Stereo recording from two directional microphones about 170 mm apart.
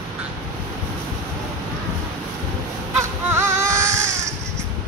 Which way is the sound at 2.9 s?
15° right (ahead or behind).